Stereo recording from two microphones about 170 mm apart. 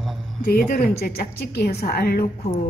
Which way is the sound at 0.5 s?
55° left (ahead or behind).